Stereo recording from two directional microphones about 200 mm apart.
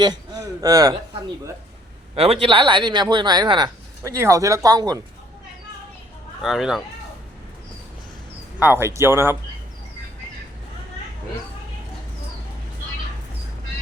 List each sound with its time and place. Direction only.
0.0 s a sound: 20° right (ahead or behind)
2.1 s speech: 30° right (ahead or behind)
6.4 s speech: centre (ahead or behind)
8.5 s speech: 10° right (ahead or behind)